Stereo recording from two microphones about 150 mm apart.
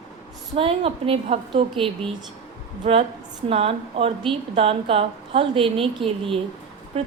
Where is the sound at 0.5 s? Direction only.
40° right (ahead or behind).